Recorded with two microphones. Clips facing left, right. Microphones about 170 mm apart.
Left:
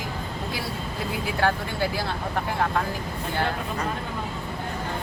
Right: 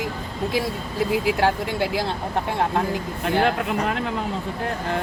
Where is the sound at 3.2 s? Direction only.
80° right.